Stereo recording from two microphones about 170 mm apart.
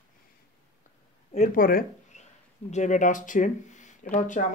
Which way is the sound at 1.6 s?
55° left (ahead or behind).